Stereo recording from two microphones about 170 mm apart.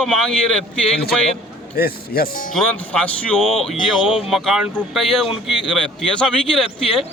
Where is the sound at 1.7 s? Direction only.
65° left (ahead or behind).